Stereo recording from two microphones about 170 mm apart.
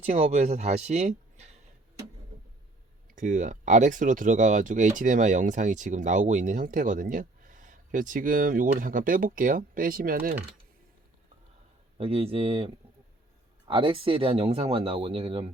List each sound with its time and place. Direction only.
0.0 s speech: 45° right (ahead or behind)
3.2 s speech: 50° right (ahead or behind)
11.9 s speech: 35° right (ahead or behind)